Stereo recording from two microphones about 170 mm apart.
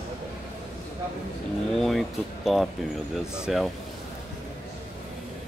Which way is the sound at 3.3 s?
5° right (ahead or behind).